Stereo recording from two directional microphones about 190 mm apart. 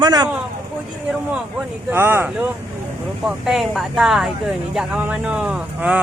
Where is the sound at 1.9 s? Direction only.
10° right (ahead or behind).